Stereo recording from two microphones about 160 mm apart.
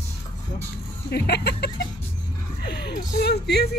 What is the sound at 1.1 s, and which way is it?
Speech, 90° left.